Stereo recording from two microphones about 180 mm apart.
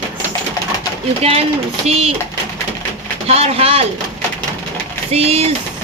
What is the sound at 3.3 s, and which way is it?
Speech, 35° right (ahead or behind).